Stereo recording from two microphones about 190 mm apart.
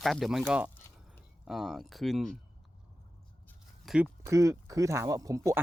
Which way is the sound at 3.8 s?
5° right (ahead or behind).